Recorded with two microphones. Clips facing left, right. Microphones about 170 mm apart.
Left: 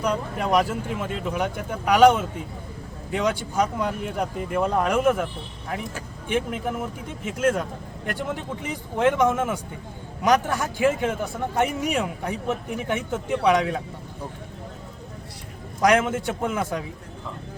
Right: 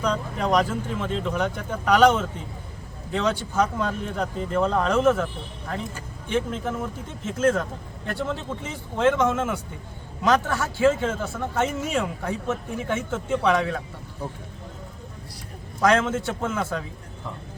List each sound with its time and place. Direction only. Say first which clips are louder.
0.0 s a man's voice: even; 10° left (ahead or behind)
6.2 s a man's voice: even; 15° left (ahead or behind)
15.8 s a man's voice: left 1 dB; 15° left (ahead or behind)